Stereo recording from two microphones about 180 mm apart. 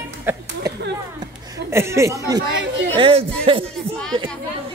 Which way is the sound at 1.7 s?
15° right (ahead or behind).